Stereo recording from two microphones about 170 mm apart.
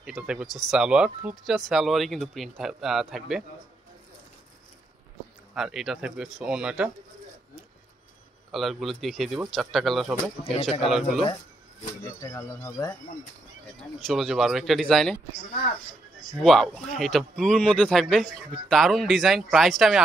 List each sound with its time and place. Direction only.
0.0 s a man's voice: 5° right (ahead or behind)
5.5 s a man's voice: 5° right (ahead or behind)
8.5 s a man's voice: centre (ahead or behind)
10.5 s speech: 35° left (ahead or behind)
10.9 s a man's voice: 5° right (ahead or behind)
12.2 s speech: 20° left (ahead or behind)
13.9 s a man's voice: centre (ahead or behind)
16.4 s a man's voice: centre (ahead or behind)